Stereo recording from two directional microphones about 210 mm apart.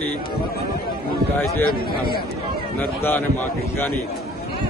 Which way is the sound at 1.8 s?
45° left (ahead or behind).